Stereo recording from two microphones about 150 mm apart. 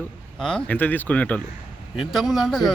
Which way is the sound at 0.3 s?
5° left (ahead or behind).